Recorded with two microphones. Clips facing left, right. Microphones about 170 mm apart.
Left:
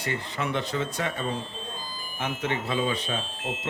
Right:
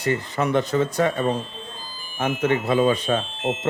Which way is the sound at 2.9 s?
65° right (ahead or behind).